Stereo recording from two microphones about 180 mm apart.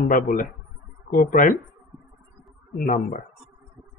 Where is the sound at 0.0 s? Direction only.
50° left (ahead or behind).